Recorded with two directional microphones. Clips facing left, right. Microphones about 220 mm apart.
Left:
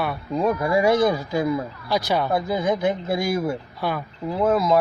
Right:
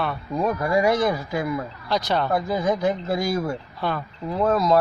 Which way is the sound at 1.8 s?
5° left (ahead or behind).